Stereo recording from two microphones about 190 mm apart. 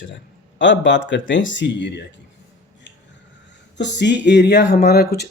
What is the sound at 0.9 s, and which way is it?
Speech, 70° left (ahead or behind).